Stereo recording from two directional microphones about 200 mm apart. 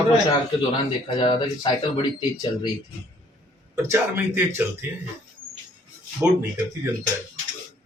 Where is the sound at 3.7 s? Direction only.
10° right (ahead or behind).